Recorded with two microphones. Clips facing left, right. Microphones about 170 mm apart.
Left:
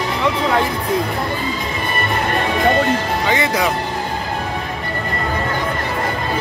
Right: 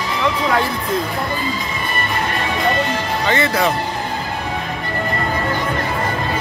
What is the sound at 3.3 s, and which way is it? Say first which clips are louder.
Speech: right 1 dB; 15° left (ahead or behind).